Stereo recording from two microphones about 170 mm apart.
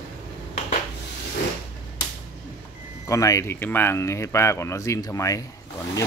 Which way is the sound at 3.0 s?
20° left (ahead or behind).